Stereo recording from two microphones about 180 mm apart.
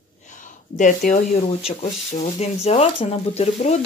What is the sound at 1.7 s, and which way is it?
Speech, 35° left (ahead or behind).